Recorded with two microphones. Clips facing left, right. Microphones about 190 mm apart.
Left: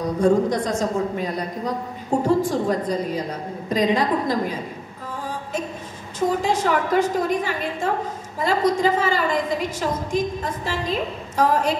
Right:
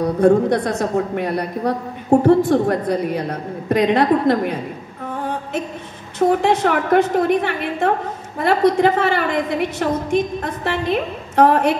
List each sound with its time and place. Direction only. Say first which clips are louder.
0.0 s a woman's voice: right 4 dB; 60° right (ahead or behind)
5.1 s a sound: right 4 dB; 60° right (ahead or behind)
6.1 s a woman's voice: right 5 dB; 60° right (ahead or behind)